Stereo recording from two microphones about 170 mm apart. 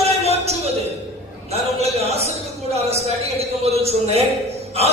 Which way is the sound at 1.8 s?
40° right (ahead or behind).